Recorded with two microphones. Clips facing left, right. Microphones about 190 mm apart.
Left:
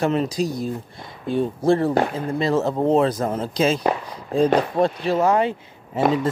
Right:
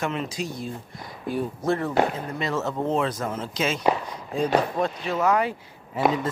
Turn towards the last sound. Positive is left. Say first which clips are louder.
# left 3 dB
turn(degrees=25)  # may be behind; listen again after turning